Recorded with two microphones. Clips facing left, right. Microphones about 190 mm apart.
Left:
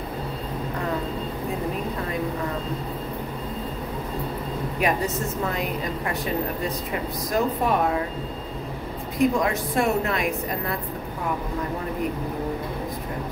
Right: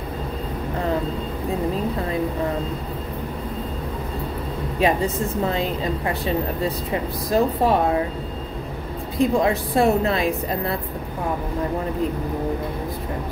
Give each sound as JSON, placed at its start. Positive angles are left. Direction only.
{"t": 4.7, "sound": "a woman's voice", "side_deg": -25}
{"t": 6.9, "sound": "a woman's voice", "side_deg": -30}
{"t": 9.2, "sound": "a woman's voice", "side_deg": -30}